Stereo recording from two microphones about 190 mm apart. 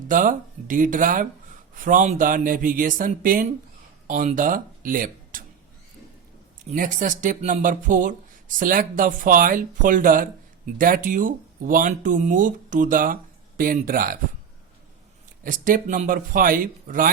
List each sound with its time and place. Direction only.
0.1 s speech: 45° right (ahead or behind)
6.7 s speech: 45° right (ahead or behind)
15.4 s speech: 45° right (ahead or behind)